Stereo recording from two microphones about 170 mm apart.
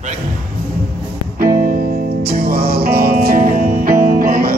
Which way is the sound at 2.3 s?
65° right (ahead or behind).